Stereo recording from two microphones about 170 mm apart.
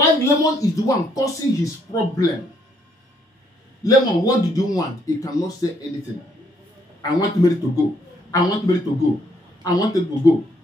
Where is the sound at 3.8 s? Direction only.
20° left (ahead or behind).